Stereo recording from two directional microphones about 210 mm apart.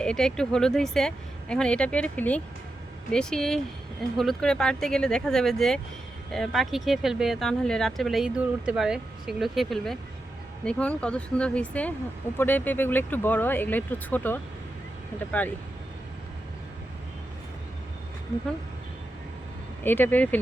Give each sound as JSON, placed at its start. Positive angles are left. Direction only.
{"t": 0.0, "sound": "speech", "side_deg": 5}
{"t": 19.8, "sound": "speech", "side_deg": 10}